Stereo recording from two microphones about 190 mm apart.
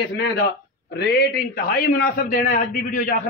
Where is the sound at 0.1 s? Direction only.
60° left (ahead or behind).